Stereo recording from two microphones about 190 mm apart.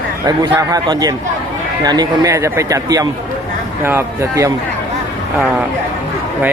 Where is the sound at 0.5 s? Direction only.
20° right (ahead or behind).